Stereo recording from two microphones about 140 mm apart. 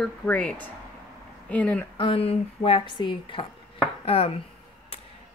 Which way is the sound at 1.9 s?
45° left (ahead or behind).